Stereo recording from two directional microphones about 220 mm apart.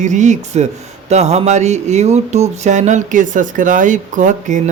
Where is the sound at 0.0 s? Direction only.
35° right (ahead or behind).